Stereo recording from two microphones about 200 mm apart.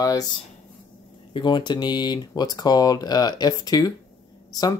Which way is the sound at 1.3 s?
20° left (ahead or behind).